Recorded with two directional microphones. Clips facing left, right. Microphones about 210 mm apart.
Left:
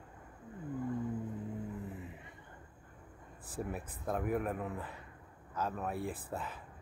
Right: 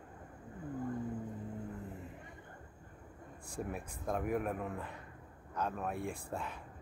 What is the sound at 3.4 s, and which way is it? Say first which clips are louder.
Speech: left 1 dB; 5° left (ahead or behind).